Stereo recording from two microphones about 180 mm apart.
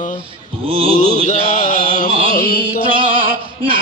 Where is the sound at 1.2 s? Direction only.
45° left (ahead or behind).